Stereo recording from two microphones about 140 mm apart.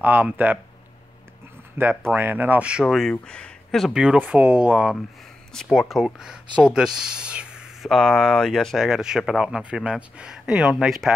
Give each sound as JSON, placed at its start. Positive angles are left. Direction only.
{"t": 0.0, "sound": "speech", "side_deg": -15}
{"t": 1.8, "sound": "speech", "side_deg": -15}
{"t": 2.8, "sound": "speech", "side_deg": 0}
{"t": 5.5, "sound": "speech", "side_deg": 5}